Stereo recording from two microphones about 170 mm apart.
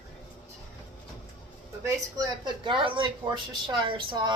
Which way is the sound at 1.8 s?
25° right (ahead or behind).